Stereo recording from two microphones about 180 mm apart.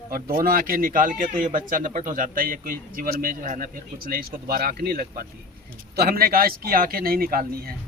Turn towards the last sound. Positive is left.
turn(degrees=-55)  # may be behind; listen again after turning